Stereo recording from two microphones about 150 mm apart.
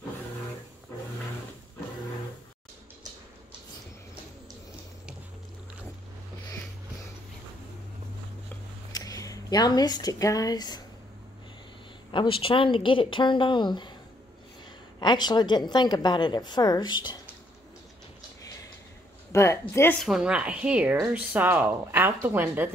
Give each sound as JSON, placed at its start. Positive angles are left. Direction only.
{"t": 8.9, "sound": "speech", "side_deg": 25}
{"t": 12.1, "sound": "speech", "side_deg": 35}
{"t": 15.0, "sound": "a woman's voice", "side_deg": 30}
{"t": 19.3, "sound": "a woman's voice", "side_deg": 20}
{"t": 20.0, "sound": "speech", "side_deg": -5}